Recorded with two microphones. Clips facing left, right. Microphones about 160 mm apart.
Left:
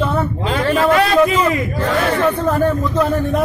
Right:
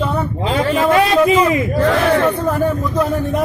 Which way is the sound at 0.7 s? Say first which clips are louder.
Even; 10° right (ahead or behind).